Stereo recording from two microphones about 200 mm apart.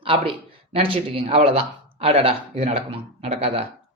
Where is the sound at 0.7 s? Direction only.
30° right (ahead or behind).